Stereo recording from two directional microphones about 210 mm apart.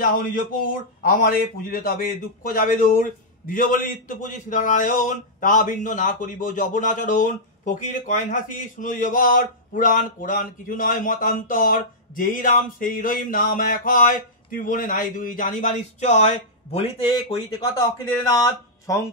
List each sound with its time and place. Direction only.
0.0 s a man's voice: 40° left (ahead or behind)
17.6 s speech: 20° left (ahead or behind)